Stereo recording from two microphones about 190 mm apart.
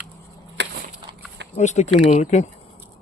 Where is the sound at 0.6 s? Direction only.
70° right (ahead or behind).